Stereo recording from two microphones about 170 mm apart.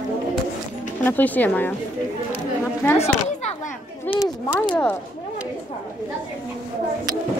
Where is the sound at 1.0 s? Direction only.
10° left (ahead or behind).